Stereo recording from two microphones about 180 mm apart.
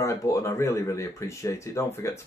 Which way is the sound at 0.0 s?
15° left (ahead or behind).